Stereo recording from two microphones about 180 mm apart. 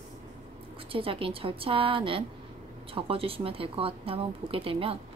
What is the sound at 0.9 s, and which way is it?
Speech, 30° right (ahead or behind).